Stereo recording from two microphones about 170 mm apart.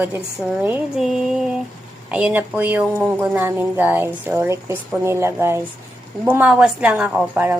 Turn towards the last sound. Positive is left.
turn(degrees=-5)  # may be behind; listen again after turning